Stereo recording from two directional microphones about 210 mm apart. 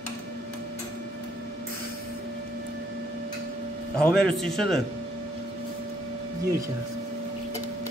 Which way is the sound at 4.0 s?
5° left (ahead or behind).